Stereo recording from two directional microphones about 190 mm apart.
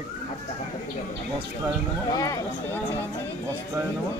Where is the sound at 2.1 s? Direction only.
15° left (ahead or behind).